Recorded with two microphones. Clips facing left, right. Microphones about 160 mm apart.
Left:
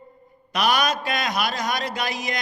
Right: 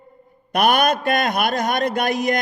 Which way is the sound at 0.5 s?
55° right (ahead or behind).